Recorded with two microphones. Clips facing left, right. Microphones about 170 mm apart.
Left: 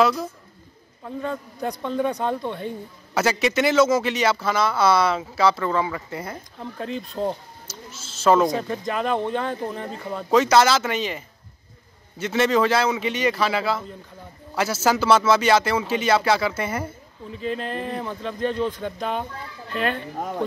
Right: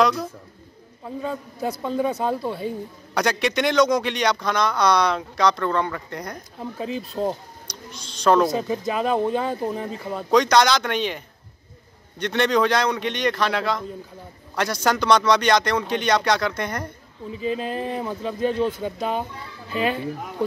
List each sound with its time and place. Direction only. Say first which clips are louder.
0.0 s speech: even; 5° left (ahead or behind)
17.4 s speech: right 2 dB; 5° right (ahead or behind)